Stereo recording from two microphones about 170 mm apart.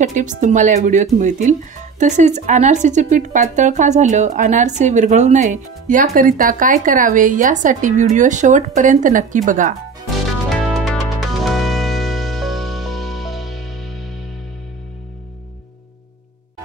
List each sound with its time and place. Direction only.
0.0 s speech: 45° right (ahead or behind)
10.5 s music: centre (ahead or behind)